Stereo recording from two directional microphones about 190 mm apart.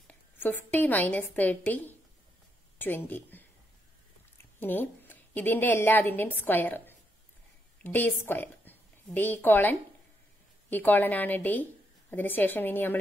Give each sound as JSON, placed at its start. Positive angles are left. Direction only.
{"t": 0.1, "sound": "a woman's voice", "side_deg": 10}
{"t": 4.6, "sound": "a woman's voice", "side_deg": 10}